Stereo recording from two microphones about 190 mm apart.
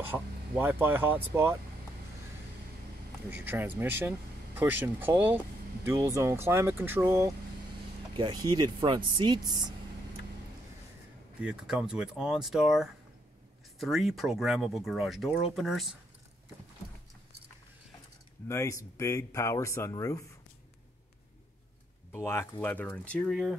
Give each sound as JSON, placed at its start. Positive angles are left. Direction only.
{"t": 0.0, "sound": "speech", "side_deg": -10}
{"t": 3.3, "sound": "speech", "side_deg": -10}
{"t": 11.4, "sound": "speech", "side_deg": -5}
{"t": 18.5, "sound": "speech", "side_deg": 15}
{"t": 22.1, "sound": "speech", "side_deg": 15}